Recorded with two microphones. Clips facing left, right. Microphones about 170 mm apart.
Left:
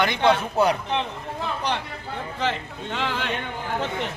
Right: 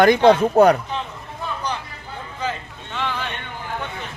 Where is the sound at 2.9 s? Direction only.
90° left.